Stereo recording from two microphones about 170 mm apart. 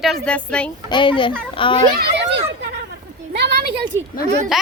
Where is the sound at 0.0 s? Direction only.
5° left (ahead or behind).